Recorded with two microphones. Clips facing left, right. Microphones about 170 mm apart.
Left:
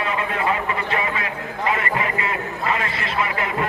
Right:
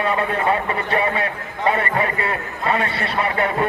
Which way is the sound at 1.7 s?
35° right (ahead or behind).